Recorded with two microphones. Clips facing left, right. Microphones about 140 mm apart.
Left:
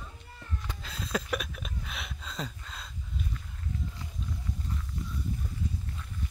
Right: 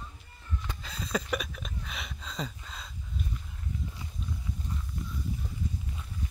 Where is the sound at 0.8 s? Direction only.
Centre (ahead or behind).